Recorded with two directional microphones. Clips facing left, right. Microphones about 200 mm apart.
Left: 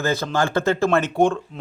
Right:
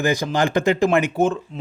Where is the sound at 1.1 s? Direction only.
5° right (ahead or behind).